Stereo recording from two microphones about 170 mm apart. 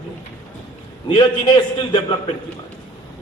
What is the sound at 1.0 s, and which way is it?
A man's voice, 30° left (ahead or behind).